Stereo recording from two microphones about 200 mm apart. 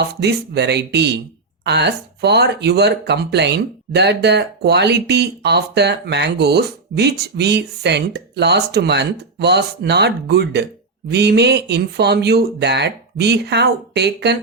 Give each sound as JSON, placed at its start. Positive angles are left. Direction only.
{"t": 0.2, "sound": "speech", "side_deg": -55}